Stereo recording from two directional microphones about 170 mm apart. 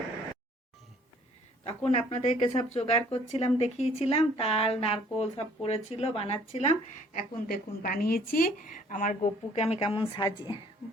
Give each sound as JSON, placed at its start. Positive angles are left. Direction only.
{"t": 1.6, "sound": "speech", "side_deg": 40}
{"t": 7.1, "sound": "a woman's voice", "side_deg": 55}
{"t": 9.6, "sound": "speech", "side_deg": 35}